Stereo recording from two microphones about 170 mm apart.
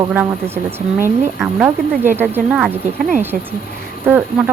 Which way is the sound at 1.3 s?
10° right (ahead or behind).